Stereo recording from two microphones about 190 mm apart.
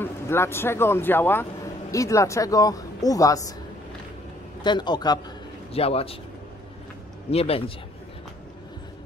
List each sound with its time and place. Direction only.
0.0 s speech: 15° left (ahead or behind)
4.6 s a man's voice: 25° left (ahead or behind)
7.2 s speech: 30° left (ahead or behind)